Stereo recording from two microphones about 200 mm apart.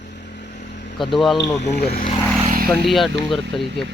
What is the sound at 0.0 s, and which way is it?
Vehicle, 55° left (ahead or behind).